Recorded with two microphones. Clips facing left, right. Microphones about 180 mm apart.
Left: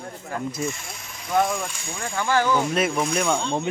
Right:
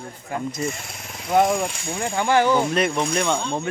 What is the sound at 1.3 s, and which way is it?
Speech, 30° right (ahead or behind).